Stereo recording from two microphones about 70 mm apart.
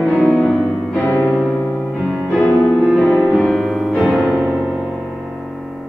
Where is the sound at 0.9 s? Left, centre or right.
Left.